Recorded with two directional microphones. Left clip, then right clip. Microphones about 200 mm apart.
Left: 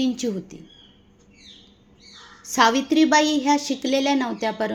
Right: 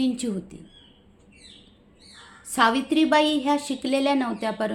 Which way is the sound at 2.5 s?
10° left (ahead or behind).